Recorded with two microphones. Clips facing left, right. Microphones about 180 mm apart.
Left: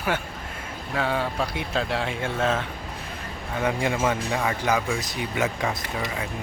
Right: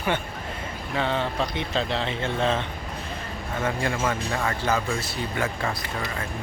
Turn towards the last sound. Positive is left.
turn(degrees=15)  # may be behind; listen again after turning